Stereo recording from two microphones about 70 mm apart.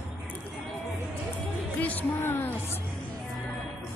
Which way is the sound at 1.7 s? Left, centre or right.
Left.